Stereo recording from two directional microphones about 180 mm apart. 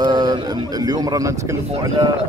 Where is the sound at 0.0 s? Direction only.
25° right (ahead or behind).